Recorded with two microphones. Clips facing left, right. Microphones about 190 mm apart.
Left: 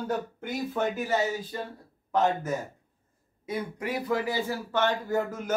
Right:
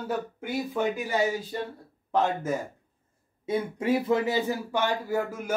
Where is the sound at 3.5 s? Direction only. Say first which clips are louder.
Right 6 dB; 25° right (ahead or behind); by 5.5 s 10° right (ahead or behind).